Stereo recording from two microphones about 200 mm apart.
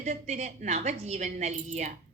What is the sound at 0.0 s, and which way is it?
A woman's voice, 35° right (ahead or behind).